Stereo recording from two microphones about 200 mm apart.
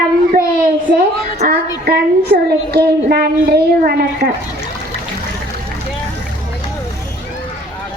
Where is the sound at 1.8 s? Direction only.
55° right (ahead or behind).